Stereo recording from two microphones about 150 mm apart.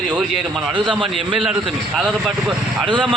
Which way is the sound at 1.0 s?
35° right (ahead or behind).